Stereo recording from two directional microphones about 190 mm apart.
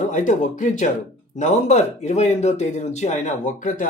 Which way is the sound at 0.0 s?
40° left (ahead or behind).